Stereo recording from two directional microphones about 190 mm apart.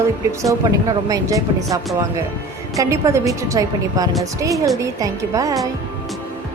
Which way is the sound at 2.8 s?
15° right (ahead or behind).